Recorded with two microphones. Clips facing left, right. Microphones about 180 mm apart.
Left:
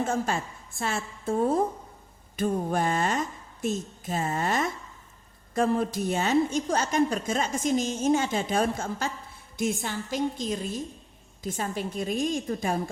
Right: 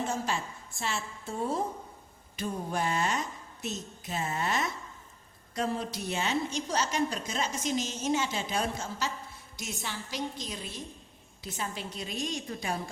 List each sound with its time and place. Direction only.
0.0 s a woman's voice: 50° left (ahead or behind)